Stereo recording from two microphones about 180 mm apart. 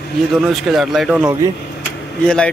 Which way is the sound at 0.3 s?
Centre (ahead or behind).